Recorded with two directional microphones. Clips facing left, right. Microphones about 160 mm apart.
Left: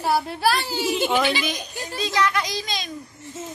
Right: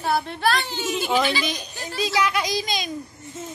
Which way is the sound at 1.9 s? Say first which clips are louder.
Even; 10° right (ahead or behind).